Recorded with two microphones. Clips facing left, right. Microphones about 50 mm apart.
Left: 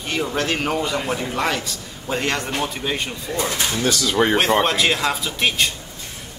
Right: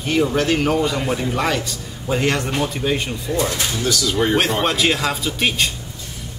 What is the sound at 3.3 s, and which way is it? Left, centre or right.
Speech, left.